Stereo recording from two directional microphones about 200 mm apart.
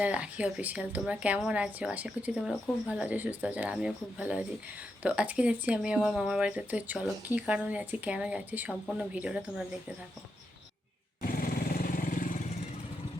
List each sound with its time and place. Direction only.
0.0 s speech: 5° right (ahead or behind)
11.3 s vehicle: 45° left (ahead or behind)